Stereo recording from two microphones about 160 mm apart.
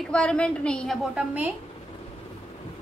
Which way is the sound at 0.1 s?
5° left (ahead or behind).